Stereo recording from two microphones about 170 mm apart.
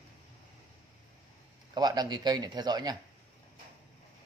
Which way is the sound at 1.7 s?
25° right (ahead or behind).